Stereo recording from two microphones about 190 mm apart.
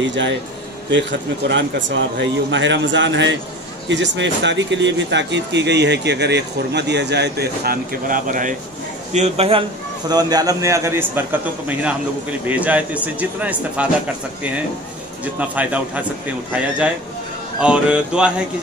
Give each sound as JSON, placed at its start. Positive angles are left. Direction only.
{"t": 0.0, "sound": "a man's voice", "side_deg": -70}
{"t": 1.5, "sound": "a man's voice", "side_deg": -75}
{"t": 15.3, "sound": "a man's voice", "side_deg": -10}
{"t": 17.6, "sound": "music", "side_deg": -5}